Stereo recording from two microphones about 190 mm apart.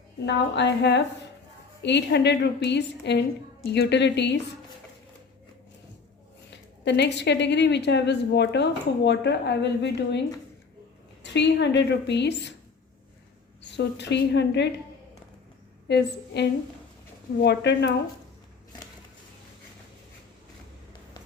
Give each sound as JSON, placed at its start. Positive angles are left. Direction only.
{"t": 0.3, "sound": "a woman's voice", "side_deg": 65}
{"t": 6.5, "sound": "a woman's voice", "side_deg": 65}
{"t": 13.6, "sound": "a woman's voice", "side_deg": 65}
{"t": 15.9, "sound": "a woman's voice", "side_deg": 65}